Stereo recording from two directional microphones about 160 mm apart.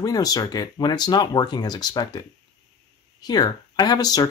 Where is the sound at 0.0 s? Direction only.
25° left (ahead or behind).